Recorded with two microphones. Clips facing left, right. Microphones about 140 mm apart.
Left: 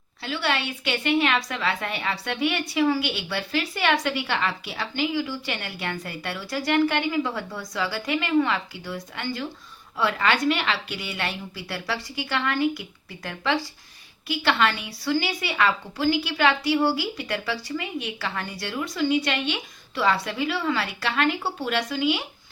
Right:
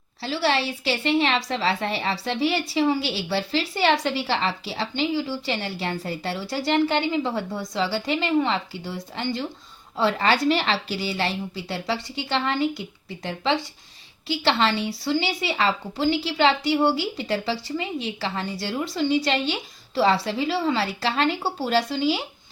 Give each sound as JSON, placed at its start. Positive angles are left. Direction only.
{"t": 0.2, "sound": "a woman's voice", "side_deg": -30}